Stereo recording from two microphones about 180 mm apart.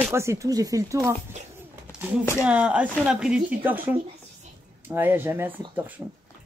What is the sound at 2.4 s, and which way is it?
Speech, 5° right (ahead or behind).